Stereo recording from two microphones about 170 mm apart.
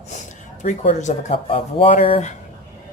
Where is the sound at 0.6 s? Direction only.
45° left (ahead or behind).